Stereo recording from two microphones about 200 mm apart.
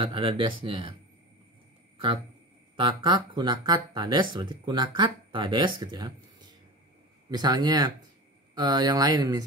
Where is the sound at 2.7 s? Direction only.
25° right (ahead or behind).